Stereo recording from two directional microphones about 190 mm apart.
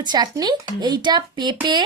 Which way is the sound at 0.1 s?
20° right (ahead or behind).